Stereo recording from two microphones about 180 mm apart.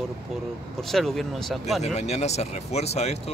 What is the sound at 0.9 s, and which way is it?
Speech, centre (ahead or behind).